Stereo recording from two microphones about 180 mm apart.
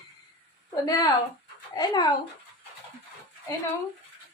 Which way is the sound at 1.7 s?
20° left (ahead or behind).